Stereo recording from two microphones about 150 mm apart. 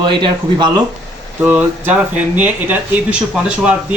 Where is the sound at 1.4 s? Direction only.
10° right (ahead or behind).